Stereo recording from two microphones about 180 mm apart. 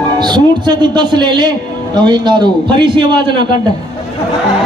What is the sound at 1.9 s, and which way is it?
A man's voice, 25° right (ahead or behind).